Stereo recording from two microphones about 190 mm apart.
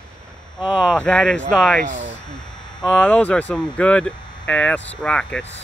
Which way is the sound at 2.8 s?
5° left (ahead or behind).